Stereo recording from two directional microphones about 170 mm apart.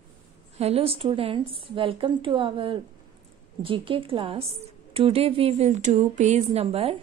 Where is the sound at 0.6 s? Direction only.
35° right (ahead or behind).